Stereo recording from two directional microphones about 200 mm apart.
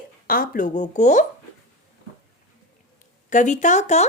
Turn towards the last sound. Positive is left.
turn(degrees=35)  # may be behind; listen again after turning